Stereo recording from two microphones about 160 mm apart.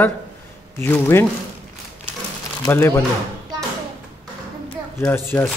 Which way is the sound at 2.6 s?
15° left (ahead or behind).